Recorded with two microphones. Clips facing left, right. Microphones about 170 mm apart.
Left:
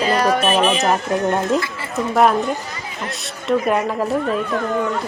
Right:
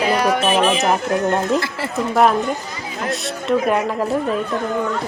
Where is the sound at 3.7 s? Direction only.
Centre (ahead or behind).